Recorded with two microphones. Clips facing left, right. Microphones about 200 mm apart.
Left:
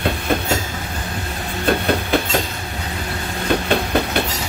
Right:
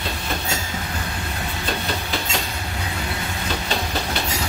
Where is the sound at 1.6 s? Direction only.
55° left (ahead or behind).